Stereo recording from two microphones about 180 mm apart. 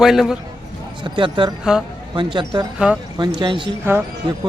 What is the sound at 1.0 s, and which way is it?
Speech, 30° right (ahead or behind).